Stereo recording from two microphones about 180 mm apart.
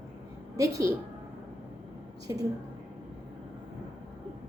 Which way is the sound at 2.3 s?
20° right (ahead or behind).